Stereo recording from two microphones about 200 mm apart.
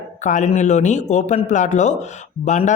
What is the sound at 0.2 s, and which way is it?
Speech, 35° left (ahead or behind).